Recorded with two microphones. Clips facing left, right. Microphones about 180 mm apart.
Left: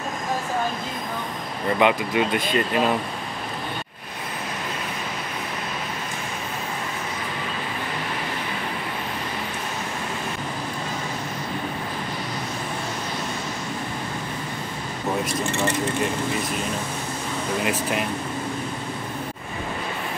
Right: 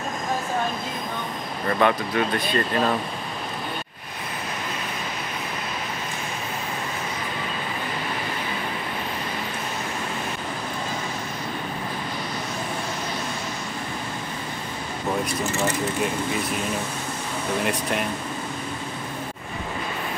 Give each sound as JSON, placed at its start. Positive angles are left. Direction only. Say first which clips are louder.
{"t": 1.8, "sound": "speech", "louder": "left 1 dB", "side_deg": 15}
{"t": 15.4, "sound": "speech", "louder": "left 1 dB", "side_deg": 0}
{"t": 17.6, "sound": "speech", "louder": "left 1 dB", "side_deg": 0}